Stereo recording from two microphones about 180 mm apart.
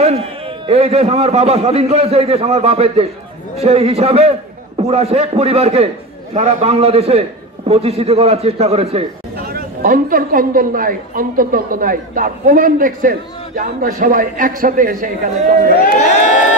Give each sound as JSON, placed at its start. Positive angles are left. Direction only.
{"t": 0.7, "sound": "a man's voice", "side_deg": -35}
{"t": 9.5, "sound": "a woman's voice", "side_deg": -55}